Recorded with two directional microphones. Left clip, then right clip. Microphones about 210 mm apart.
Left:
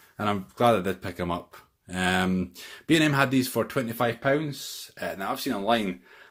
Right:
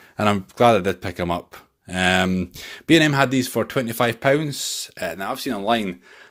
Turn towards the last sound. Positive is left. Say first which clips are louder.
# right 3 dB
turn(degrees=-45)  # may be behind; listen again after turning